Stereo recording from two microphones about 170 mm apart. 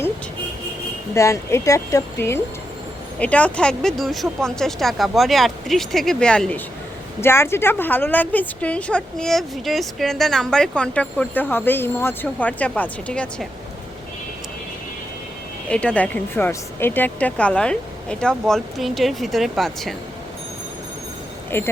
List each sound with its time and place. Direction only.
1.1 s a woman's voice: 15° left (ahead or behind)
15.7 s speech: 5° left (ahead or behind)
21.5 s a woman's voice: 15° left (ahead or behind)